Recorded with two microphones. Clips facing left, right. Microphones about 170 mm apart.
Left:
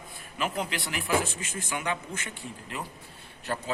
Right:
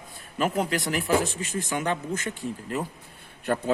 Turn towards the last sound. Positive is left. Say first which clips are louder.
# right 7 dB
turn(degrees=-55)  # may be behind; listen again after turning